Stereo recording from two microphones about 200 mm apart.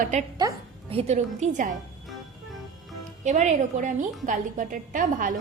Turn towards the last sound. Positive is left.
turn(degrees=-40)  # may be behind; listen again after turning